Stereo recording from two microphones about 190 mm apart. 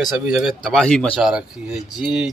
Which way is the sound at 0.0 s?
Centre (ahead or behind).